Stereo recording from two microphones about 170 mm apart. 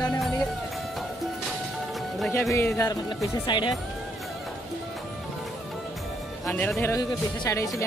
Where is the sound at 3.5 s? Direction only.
25° left (ahead or behind).